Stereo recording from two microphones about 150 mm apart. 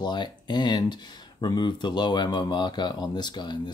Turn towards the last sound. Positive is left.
turn(degrees=30)  # may be behind; listen again after turning